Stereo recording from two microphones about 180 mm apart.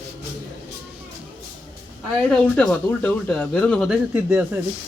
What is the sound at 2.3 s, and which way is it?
Speech, 5° left (ahead or behind).